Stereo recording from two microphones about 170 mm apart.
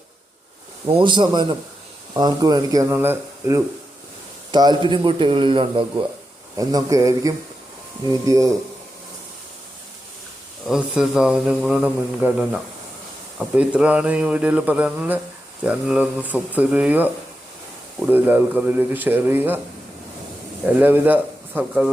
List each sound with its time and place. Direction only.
0.9 s a man's voice: 30° right (ahead or behind); by 3.6 s 15° right (ahead or behind)
4.5 s a man's voice: 25° right (ahead or behind)
10.7 s speech: 5° right (ahead or behind)
13.6 s speech: 5° right (ahead or behind)
20.7 s speech: 10° right (ahead or behind)